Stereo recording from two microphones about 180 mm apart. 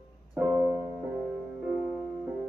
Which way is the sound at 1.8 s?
5° right (ahead or behind).